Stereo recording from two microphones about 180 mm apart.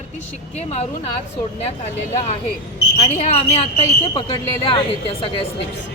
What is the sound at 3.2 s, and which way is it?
A woman's voice, 35° left (ahead or behind).